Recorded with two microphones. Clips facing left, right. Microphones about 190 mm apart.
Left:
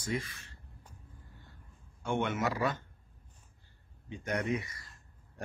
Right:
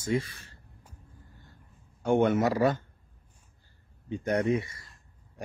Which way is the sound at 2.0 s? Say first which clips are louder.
Right 8 dB; 35° right (ahead or behind).